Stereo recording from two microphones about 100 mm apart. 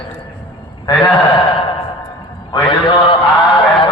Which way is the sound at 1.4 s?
60° left (ahead or behind).